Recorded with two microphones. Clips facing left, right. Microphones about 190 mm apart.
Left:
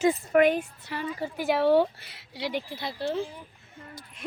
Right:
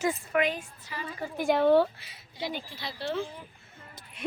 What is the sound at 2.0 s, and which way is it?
Speech, 75° left (ahead or behind).